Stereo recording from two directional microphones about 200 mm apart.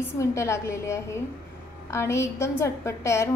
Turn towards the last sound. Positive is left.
turn(degrees=15)  # may be behind; listen again after turning